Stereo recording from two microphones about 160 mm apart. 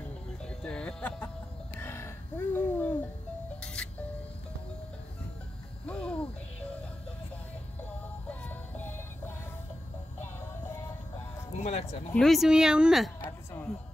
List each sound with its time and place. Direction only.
0.4 s music: 5° left (ahead or behind)
5.9 s a sound: 5° left (ahead or behind)
8.3 s music: 10° left (ahead or behind)
11.6 s speech: 40° left (ahead or behind)
12.1 s speech: centre (ahead or behind)
13.2 s a sound: 10° left (ahead or behind)